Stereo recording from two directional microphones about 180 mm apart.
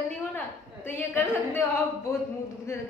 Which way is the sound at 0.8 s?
10° left (ahead or behind).